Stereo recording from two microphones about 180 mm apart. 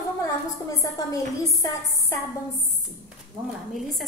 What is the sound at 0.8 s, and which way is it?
A woman's voice, 20° left (ahead or behind).